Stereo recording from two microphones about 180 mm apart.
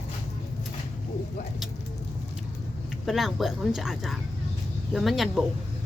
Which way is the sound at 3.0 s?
Centre (ahead or behind).